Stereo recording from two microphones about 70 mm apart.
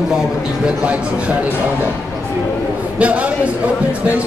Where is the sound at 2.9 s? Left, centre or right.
Centre.